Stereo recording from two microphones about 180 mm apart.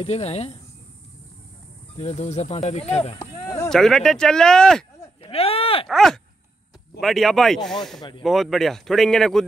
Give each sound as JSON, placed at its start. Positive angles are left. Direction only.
{"t": 0.0, "sound": "speech", "side_deg": 35}
{"t": 2.0, "sound": "speech", "side_deg": 35}
{"t": 3.6, "sound": "speech", "side_deg": 0}
{"t": 5.2, "sound": "a sound", "side_deg": 35}
{"t": 5.9, "sound": "speech", "side_deg": 0}